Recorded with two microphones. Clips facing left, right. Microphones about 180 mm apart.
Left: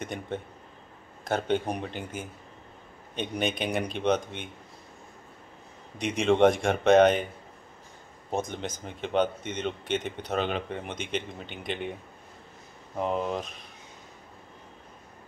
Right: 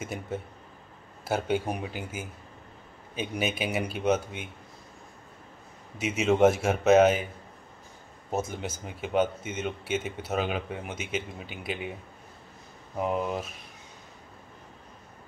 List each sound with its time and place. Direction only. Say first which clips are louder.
0.0 s speech: even; 5° right (ahead or behind)
5.9 s speech: left 1 dB; 5° right (ahead or behind)
8.3 s speech: even; 5° right (ahead or behind)